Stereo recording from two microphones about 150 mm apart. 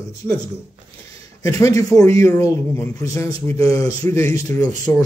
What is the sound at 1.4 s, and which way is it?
Speech, 20° left (ahead or behind).